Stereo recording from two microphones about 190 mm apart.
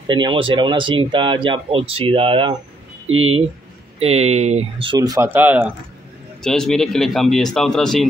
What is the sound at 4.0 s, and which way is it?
Speech, 35° right (ahead or behind).